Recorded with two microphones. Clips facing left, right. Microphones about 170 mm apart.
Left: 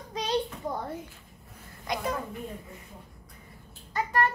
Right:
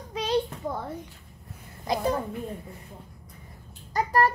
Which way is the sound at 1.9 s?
30° right (ahead or behind).